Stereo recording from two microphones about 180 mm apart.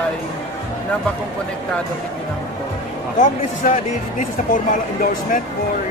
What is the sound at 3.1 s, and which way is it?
Speech, 45° left (ahead or behind).